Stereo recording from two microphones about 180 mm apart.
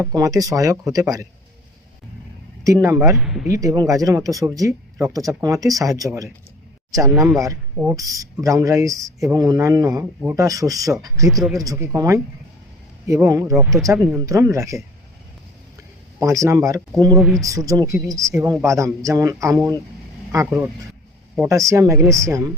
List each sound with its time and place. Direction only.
0.0 s speech: 20° right (ahead or behind)
2.8 s speech: 15° right (ahead or behind)
3.2 s speech: centre (ahead or behind)
3.4 s speech: 15° right (ahead or behind)
7.3 s speech: 20° right (ahead or behind)
11.3 s a man's voice: centre (ahead or behind)
11.5 s speech: 20° right (ahead or behind)
13.6 s a man's voice: centre (ahead or behind)
13.8 s speech: 15° right (ahead or behind)
16.2 s speech: 15° right (ahead or behind)
17.2 s a man's voice: centre (ahead or behind)
17.4 s speech: 20° right (ahead or behind)
21.9 s a man's voice: centre (ahead or behind)
22.2 s speech: 20° right (ahead or behind)